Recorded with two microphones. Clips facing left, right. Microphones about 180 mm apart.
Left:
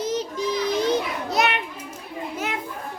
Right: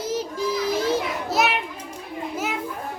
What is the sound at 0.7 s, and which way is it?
Children playing, 5° right (ahead or behind).